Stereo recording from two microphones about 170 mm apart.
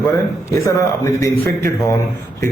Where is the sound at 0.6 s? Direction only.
15° left (ahead or behind).